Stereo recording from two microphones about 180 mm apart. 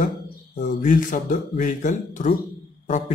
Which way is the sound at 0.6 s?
40° left (ahead or behind).